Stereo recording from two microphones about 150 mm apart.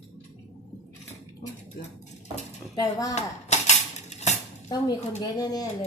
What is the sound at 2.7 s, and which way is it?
Speech, 25° left (ahead or behind).